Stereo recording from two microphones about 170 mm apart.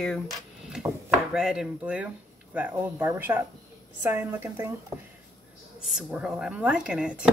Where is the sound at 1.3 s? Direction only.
5° right (ahead or behind).